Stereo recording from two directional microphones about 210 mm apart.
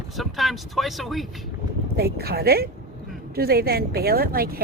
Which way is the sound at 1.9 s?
50° right (ahead or behind).